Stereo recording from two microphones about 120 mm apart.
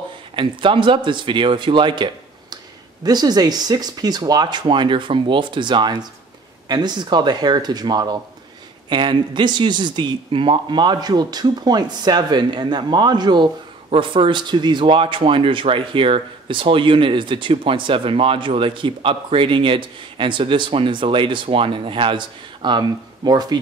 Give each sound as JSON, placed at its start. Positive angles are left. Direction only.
{"t": 0.4, "sound": "speech", "side_deg": -45}